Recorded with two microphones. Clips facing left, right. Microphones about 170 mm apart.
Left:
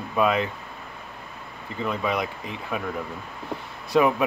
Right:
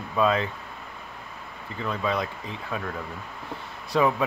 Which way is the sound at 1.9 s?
15° left (ahead or behind).